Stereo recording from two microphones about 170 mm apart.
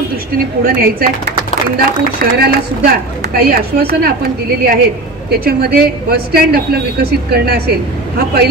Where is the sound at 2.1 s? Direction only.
65° right (ahead or behind).